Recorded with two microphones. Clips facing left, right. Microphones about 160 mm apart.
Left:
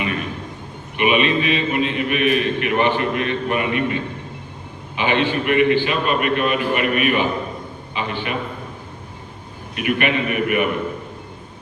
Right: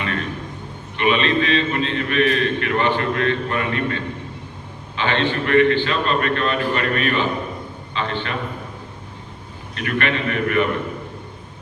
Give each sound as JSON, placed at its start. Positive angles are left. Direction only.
{"t": 0.0, "sound": "a sound", "side_deg": 15}
{"t": 0.9, "sound": "a man's voice", "side_deg": 15}
{"t": 9.7, "sound": "a man's voice", "side_deg": 15}